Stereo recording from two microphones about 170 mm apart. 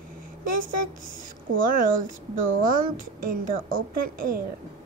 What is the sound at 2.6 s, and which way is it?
Speech, 55° right (ahead or behind).